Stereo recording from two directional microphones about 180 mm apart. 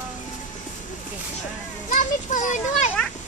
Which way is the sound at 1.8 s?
45° left (ahead or behind).